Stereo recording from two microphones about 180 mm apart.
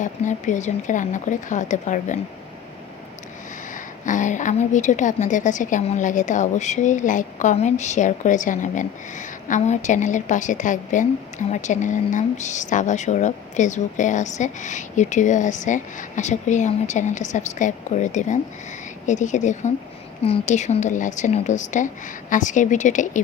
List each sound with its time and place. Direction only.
0.0 s a woman's voice: 45° left (ahead or behind)
4.0 s a woman's voice: 45° left (ahead or behind)